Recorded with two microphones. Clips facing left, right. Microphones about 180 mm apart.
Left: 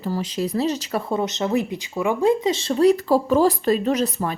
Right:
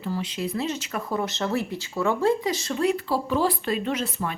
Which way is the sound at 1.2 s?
20° left (ahead or behind).